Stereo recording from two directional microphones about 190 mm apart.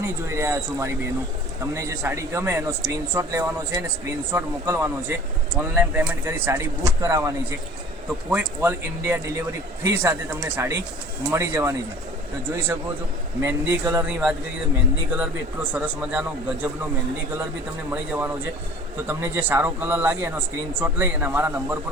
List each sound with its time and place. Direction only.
0.0 s speech: 15° right (ahead or behind)
15.1 s speech: 10° right (ahead or behind)
17.9 s speech: 10° right (ahead or behind)